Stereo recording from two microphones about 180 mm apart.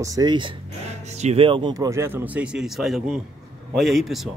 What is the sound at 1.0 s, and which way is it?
A man's voice, 40° right (ahead or behind).